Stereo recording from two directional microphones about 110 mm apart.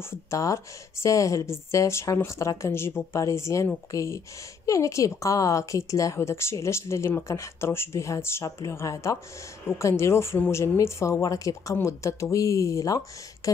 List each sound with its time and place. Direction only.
0.0 s speech: 25° left (ahead or behind)